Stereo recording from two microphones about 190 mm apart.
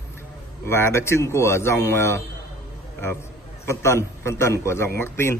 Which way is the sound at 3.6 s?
15° left (ahead or behind).